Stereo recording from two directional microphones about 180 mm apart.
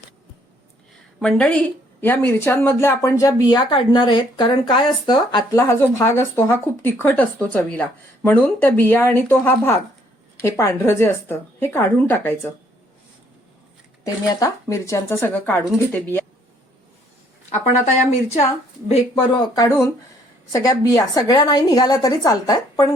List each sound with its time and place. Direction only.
1.2 s speech: 5° left (ahead or behind)
14.0 s speech: 20° left (ahead or behind)
18.9 s a woman's voice: 25° left (ahead or behind)
19.6 s a woman's voice: 15° left (ahead or behind)